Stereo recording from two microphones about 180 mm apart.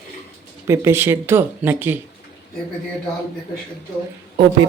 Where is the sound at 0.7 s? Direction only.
15° right (ahead or behind).